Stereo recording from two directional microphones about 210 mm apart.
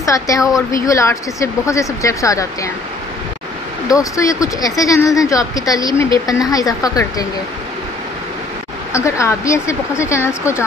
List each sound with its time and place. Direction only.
0.0 s a woman's voice: 15° left (ahead or behind)
3.9 s speech: 15° left (ahead or behind)
8.9 s speech: 15° left (ahead or behind)